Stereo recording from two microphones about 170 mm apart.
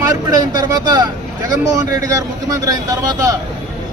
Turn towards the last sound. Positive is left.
turn(degrees=-20)  # may be behind; listen again after turning